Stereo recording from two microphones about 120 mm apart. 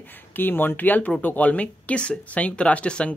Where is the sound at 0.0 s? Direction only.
15° left (ahead or behind).